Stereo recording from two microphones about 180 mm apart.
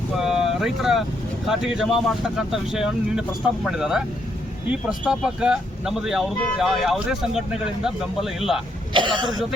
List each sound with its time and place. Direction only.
0.2 s speech: centre (ahead or behind)
8.9 s speech: 25° right (ahead or behind)